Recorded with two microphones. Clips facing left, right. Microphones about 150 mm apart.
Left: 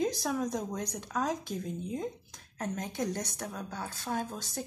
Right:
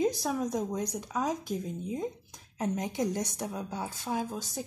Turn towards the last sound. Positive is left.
turn(degrees=-10)  # may be behind; listen again after turning